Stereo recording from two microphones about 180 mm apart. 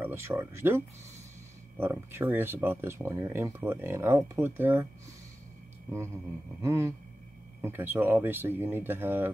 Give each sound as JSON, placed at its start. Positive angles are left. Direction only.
{"t": 0.0, "sound": "speech", "side_deg": -15}
{"t": 6.6, "sound": "speech", "side_deg": -15}